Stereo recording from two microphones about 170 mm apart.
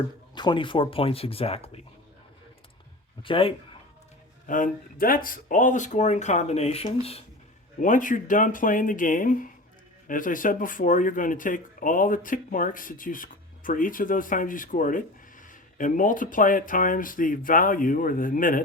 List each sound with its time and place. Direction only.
0.3 s speech: 30° left (ahead or behind)
3.2 s speech: 30° left (ahead or behind)
4.4 s speech: 55° left (ahead or behind); by 7.2 s 35° left (ahead or behind)
7.8 s speech: 50° left (ahead or behind)